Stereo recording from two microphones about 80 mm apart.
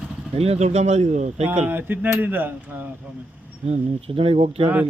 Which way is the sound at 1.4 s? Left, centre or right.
Right.